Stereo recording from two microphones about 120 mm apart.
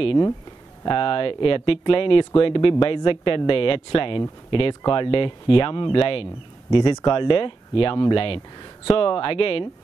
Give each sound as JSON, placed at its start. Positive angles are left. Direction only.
{"t": 0.8, "sound": "speech", "side_deg": 50}